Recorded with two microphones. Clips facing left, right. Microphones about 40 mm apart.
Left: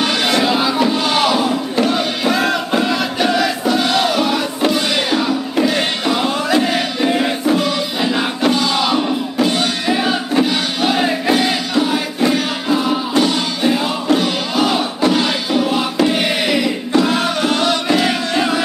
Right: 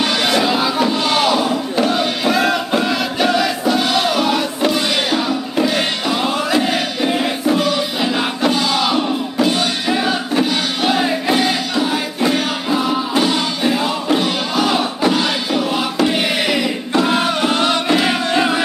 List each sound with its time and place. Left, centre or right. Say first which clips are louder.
0.0 s a sound: even; centre
6.2 s music: even; centre
16.9 s music: even; centre